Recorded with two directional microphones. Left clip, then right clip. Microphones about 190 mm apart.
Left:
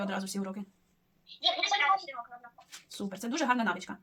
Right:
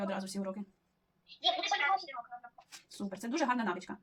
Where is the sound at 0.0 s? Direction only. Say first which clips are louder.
Left 2 dB; 40° left (ahead or behind).